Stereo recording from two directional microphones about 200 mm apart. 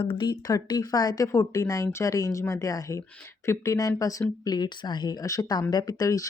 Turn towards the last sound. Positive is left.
turn(degrees=15)  # may be behind; listen again after turning